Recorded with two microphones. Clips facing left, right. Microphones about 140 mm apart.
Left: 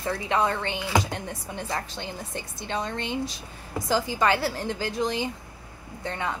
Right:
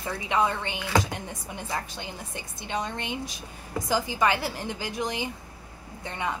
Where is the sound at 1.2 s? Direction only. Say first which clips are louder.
Left 3 dB; 15° right (ahead or behind).